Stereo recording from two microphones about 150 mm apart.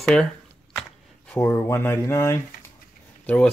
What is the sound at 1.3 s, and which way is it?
Speech, 15° left (ahead or behind).